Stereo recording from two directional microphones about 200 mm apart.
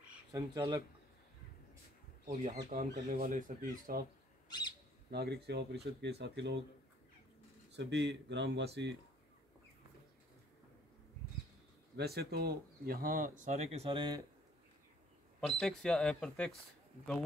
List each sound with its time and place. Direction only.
0.3 s speech: 20° right (ahead or behind)
2.2 s speech: 40° right (ahead or behind)
4.5 s owl: 20° left (ahead or behind)
5.1 s speech: 55° right (ahead or behind)
7.7 s speech: 60° right (ahead or behind)
12.0 s speech: 55° right (ahead or behind); by 14.2 s 25° right (ahead or behind)
15.6 s speech: 5° left (ahead or behind)